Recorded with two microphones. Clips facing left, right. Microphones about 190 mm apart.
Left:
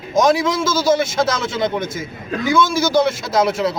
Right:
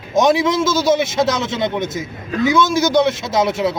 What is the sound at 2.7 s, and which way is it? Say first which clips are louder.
Speech: right 2 dB; 20° right (ahead or behind).